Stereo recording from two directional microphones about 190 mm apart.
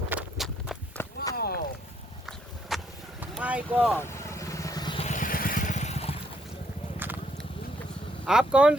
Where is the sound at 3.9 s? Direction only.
15° left (ahead or behind).